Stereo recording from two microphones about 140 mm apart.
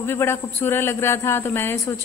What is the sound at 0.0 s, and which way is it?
A man's voice, 15° left (ahead or behind).